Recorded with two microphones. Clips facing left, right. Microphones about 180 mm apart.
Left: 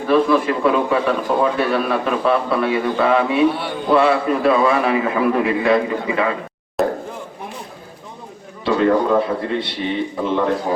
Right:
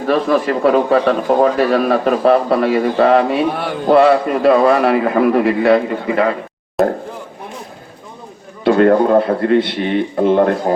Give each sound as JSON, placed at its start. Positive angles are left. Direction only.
{"t": 0.0, "sound": "a man's voice", "side_deg": -40}
{"t": 6.8, "sound": "a sound", "side_deg": 0}
{"t": 8.6, "sound": "a man's voice", "side_deg": -55}